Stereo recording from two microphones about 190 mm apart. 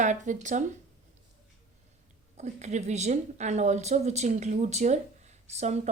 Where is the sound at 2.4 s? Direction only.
35° right (ahead or behind).